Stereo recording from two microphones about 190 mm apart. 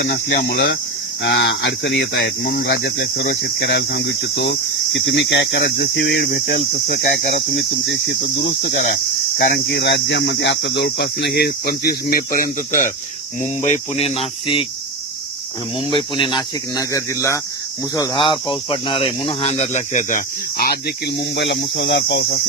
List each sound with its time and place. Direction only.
0.0 s speech: 60° left (ahead or behind)
9.6 s speech: 65° left (ahead or behind); by 14.7 s 30° left (ahead or behind)
15.9 s cricket: 25° left (ahead or behind)
17.9 s speech: 20° left (ahead or behind); by 22.4 s 60° left (ahead or behind)